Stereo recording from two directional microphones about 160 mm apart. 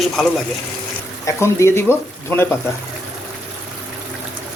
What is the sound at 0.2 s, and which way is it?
Speech, 5° left (ahead or behind).